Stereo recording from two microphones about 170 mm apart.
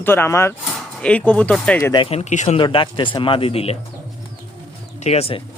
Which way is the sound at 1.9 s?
35° left (ahead or behind).